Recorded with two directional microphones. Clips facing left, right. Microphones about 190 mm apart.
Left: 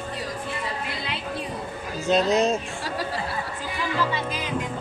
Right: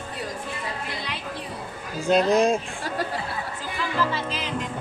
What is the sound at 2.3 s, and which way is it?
Speech, 10° right (ahead or behind).